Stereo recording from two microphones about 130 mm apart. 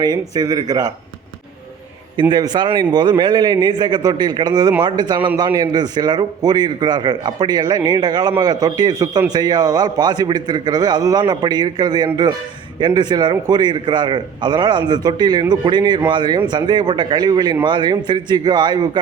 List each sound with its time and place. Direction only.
0.0 s a man's voice: 30° right (ahead or behind)
2.3 s a man's voice: 35° right (ahead or behind)